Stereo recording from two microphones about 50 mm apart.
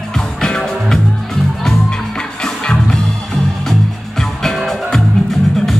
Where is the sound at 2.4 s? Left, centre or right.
Centre.